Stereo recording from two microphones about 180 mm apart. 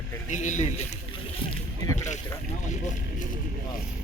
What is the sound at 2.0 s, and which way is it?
Speech, 40° left (ahead or behind).